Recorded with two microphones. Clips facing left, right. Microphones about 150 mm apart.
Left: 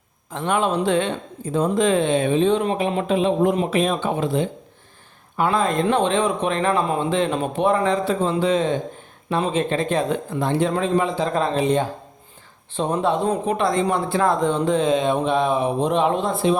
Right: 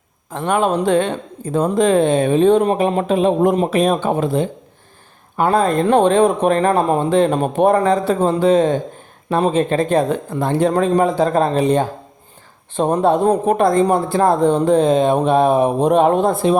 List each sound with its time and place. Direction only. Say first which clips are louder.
0.3 s speech: right 4 dB; 45° right (ahead or behind)